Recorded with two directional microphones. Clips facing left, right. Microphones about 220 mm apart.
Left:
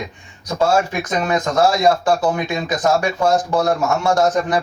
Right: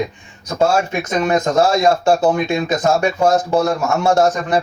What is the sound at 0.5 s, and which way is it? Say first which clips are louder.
Speech: right 1 dB; 25° right (ahead or behind).